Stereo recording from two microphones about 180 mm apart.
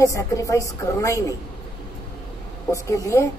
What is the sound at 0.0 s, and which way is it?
A woman's voice, 20° left (ahead or behind).